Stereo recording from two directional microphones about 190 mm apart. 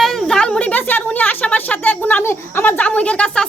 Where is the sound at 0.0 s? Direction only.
Centre (ahead or behind).